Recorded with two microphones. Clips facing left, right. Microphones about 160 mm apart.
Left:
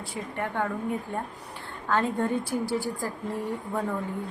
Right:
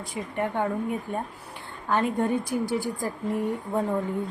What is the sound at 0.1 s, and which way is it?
Speech, 15° right (ahead or behind).